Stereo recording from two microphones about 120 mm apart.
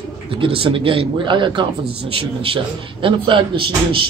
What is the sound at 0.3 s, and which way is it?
A man's voice, 45° right (ahead or behind).